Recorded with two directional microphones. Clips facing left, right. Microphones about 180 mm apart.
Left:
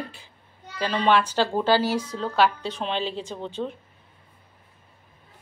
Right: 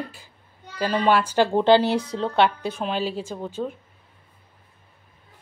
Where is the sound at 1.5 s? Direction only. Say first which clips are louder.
Right 4 dB; 20° right (ahead or behind).